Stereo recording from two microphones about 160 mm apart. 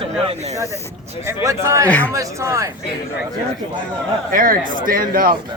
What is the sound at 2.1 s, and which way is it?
Speech, 20° right (ahead or behind).